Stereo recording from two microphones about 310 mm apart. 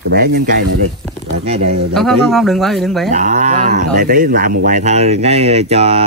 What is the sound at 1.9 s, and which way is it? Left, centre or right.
Speech, centre.